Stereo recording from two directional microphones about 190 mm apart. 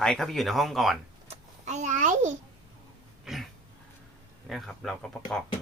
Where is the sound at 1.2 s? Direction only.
35° right (ahead or behind).